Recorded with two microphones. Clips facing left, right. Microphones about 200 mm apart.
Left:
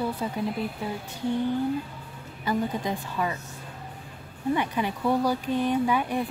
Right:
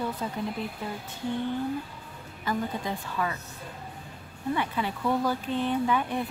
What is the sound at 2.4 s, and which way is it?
Speech, 15° left (ahead or behind).